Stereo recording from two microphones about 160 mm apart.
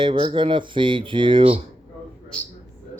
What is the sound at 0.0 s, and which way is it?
Speech, 30° right (ahead or behind).